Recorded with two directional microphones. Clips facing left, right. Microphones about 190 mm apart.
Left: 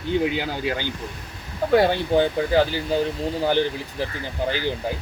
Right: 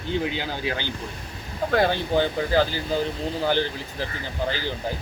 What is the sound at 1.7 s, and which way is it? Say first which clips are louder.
Speech: left 4 dB; 15° left (ahead or behind).